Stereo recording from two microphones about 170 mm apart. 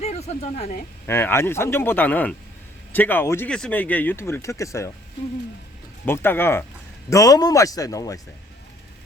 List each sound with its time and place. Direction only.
0.0 s speech: 40° left (ahead or behind)
1.0 s speech: 15° left (ahead or behind)
6.1 s speech: 15° left (ahead or behind)